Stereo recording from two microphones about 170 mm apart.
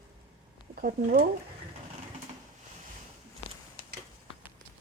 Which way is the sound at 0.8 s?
55° right (ahead or behind).